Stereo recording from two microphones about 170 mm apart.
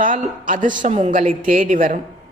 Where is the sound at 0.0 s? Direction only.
50° right (ahead or behind).